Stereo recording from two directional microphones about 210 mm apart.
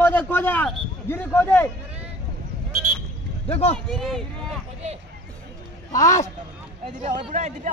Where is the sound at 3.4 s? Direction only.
30° left (ahead or behind).